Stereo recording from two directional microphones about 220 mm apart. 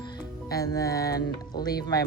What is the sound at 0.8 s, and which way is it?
Music, 15° left (ahead or behind).